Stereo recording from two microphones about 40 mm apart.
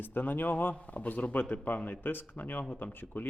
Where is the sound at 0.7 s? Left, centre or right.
Left.